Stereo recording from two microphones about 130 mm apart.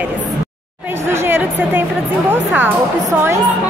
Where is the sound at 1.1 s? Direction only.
15° right (ahead or behind).